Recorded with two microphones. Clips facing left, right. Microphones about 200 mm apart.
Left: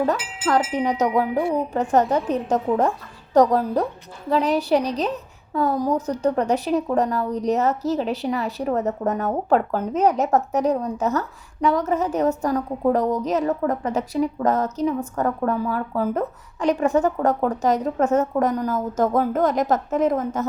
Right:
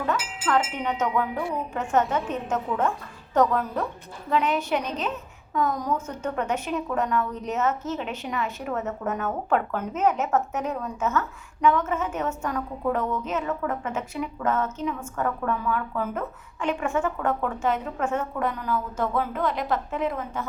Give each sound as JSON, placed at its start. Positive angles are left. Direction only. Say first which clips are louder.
{"t": 0.4, "sound": "a woman's voice", "louder": "left 5 dB", "side_deg": 35}